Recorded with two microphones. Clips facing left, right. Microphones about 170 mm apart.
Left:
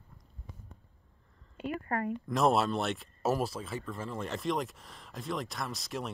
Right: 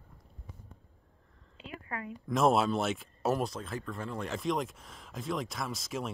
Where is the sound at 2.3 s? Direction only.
Centre (ahead or behind).